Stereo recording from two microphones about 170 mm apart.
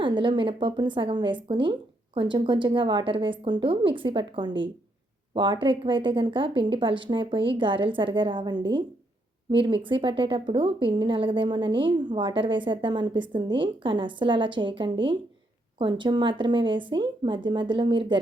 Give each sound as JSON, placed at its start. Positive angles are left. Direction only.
{"t": 0.0, "sound": "speech", "side_deg": -30}